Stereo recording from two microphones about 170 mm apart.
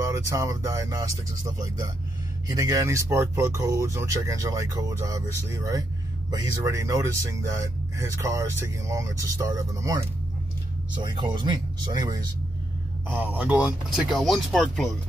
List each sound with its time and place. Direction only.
0.0 s speech: 15° right (ahead or behind)
13.1 s speech: 10° right (ahead or behind)